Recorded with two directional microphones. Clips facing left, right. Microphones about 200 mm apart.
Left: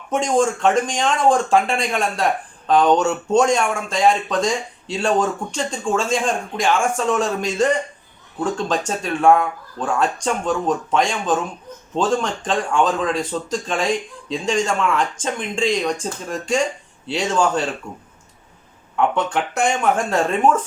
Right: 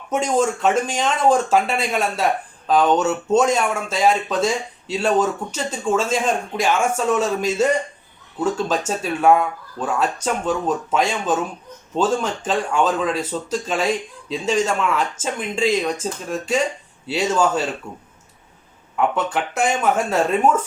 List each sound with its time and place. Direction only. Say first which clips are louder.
0.1 s speech: left 1 dB; 5° right (ahead or behind)
18.9 s speech: left 1 dB; 5° right (ahead or behind)